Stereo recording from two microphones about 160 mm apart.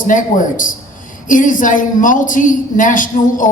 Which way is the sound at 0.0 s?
55° left (ahead or behind).